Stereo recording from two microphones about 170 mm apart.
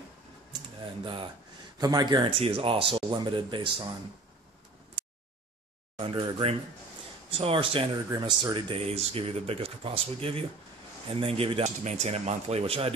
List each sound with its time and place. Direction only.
1.0 s speech: 30° right (ahead or behind)
5.9 s speech: 30° right (ahead or behind)